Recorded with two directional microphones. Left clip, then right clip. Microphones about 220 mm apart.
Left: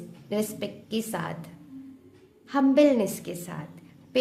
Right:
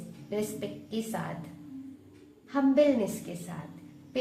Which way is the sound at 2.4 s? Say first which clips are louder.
Left 4 dB; 50° left (ahead or behind).